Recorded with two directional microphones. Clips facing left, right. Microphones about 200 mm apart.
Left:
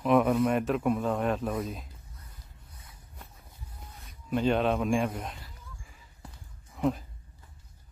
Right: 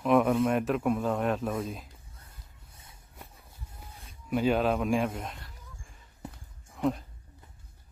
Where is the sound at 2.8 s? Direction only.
25° right (ahead or behind).